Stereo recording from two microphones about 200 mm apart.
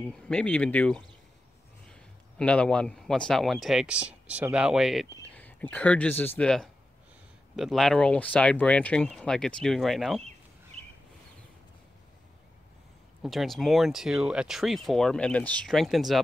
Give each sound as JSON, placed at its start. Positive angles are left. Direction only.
{"t": 0.1, "sound": "a man's voice", "side_deg": 5}
{"t": 5.1, "sound": "speech", "side_deg": 10}
{"t": 10.8, "sound": "a sound", "side_deg": -30}
{"t": 13.2, "sound": "speech", "side_deg": 0}